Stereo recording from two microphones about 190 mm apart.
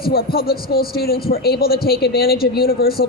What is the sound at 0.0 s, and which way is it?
A woman's voice, 55° left (ahead or behind).